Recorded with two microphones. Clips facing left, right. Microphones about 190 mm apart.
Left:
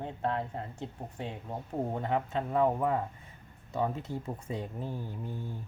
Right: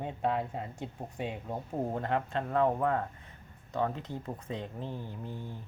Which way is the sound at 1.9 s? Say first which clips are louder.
Left 1 dB; centre (ahead or behind).